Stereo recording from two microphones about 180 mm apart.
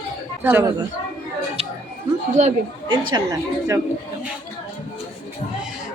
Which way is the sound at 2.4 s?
40° right (ahead or behind).